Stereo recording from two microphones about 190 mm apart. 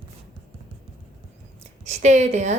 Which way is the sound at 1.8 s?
35° right (ahead or behind).